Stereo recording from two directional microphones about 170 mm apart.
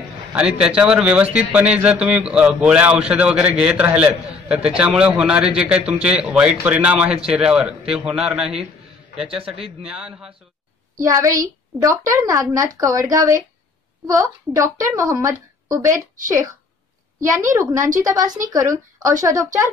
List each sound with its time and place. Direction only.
0.3 s a man's voice: 5° right (ahead or behind)
5.8 s a man's voice: 35° right (ahead or behind)
6.0 s a man's voice: 5° right (ahead or behind)
11.0 s a woman's voice: 20° right (ahead or behind)
17.5 s a woman's voice: 20° right (ahead or behind)